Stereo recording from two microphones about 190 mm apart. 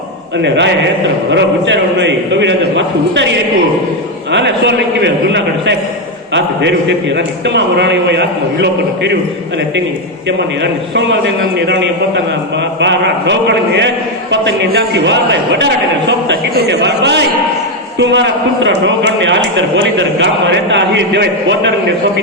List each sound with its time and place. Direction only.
0.4 s a man's voice: 65° right (ahead or behind)
10.2 s a man's voice: 70° right (ahead or behind)